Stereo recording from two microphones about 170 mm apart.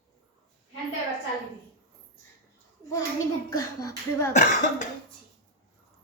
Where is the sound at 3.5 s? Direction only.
20° left (ahead or behind).